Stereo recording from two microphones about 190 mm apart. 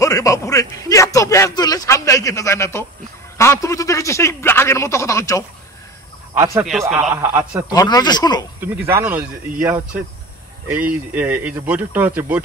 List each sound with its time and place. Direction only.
0.0 s a man's voice: 15° left (ahead or behind)
6.3 s a man's voice: 15° right (ahead or behind)
7.7 s speech: 20° left (ahead or behind)
8.5 s speech: 10° right (ahead or behind)
11.1 s speech: 10° right (ahead or behind)